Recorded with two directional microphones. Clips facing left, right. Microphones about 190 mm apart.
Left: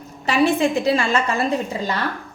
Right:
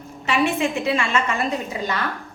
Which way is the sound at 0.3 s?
35° left (ahead or behind).